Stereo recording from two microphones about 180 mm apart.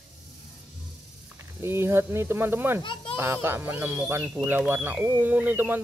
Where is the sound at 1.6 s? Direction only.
15° right (ahead or behind).